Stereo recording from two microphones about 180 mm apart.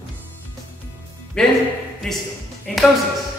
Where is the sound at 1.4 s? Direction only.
5° left (ahead or behind).